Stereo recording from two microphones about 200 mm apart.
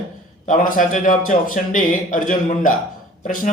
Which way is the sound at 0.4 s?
45° left (ahead or behind).